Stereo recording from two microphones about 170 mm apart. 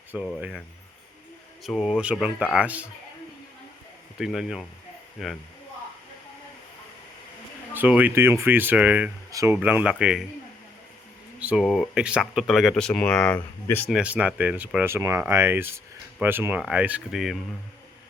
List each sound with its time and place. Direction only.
0.3 s speech: 5° right (ahead or behind)
1.6 s speech: centre (ahead or behind)
4.2 s speech: 5° right (ahead or behind)
7.7 s speech: 10° right (ahead or behind)
9.3 s speech: 20° right (ahead or behind)
9.6 s speech: 5° right (ahead or behind)
11.3 s speech: 5° right (ahead or behind); by 13.9 s 10° left (ahead or behind)
13.9 s speech: 10° right (ahead or behind)